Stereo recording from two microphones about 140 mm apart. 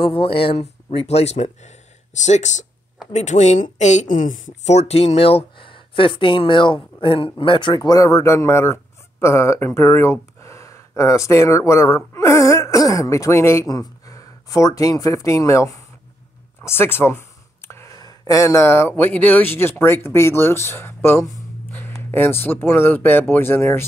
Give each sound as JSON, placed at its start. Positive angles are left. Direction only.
{"t": 0.0, "sound": "speech", "side_deg": 40}